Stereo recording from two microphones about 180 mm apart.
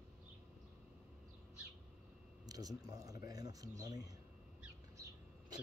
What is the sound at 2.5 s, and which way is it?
Speech, 20° right (ahead or behind).